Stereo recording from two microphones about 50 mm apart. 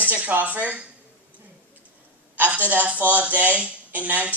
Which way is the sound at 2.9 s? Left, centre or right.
Right.